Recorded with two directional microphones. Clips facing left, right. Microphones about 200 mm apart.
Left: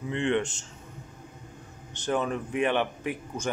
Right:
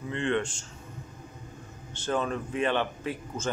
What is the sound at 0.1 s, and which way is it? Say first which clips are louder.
Speech: left 2 dB; 15° left (ahead or behind).